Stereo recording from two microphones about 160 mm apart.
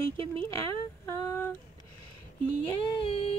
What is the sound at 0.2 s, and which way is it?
Speech, 35° right (ahead or behind).